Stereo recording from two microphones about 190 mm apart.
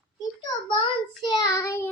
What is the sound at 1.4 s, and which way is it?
Speech, 15° left (ahead or behind).